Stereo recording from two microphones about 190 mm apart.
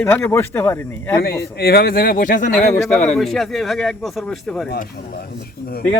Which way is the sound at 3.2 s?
Centre (ahead or behind).